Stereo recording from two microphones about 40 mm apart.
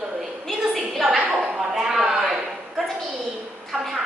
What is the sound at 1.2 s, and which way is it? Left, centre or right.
A woman's voice, centre.